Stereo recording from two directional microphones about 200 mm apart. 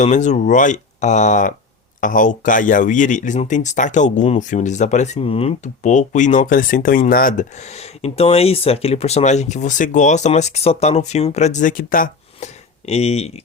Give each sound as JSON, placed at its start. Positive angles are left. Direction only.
{"t": 0.0, "sound": "speech", "side_deg": 35}